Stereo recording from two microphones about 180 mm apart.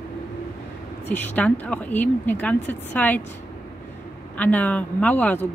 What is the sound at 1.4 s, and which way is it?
Speech, 10° left (ahead or behind).